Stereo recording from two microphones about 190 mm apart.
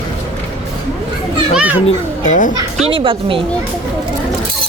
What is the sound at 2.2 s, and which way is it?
Speech, 40° left (ahead or behind).